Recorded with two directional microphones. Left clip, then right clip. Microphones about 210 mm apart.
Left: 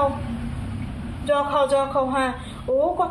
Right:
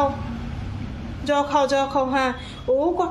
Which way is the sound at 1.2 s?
20° right (ahead or behind).